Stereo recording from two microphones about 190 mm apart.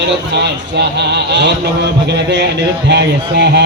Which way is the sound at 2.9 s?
60° right (ahead or behind).